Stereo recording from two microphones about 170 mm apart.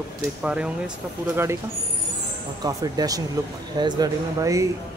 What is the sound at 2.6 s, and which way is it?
Speech, 20° right (ahead or behind).